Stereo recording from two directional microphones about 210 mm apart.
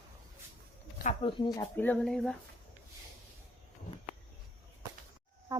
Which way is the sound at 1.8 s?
5° left (ahead or behind).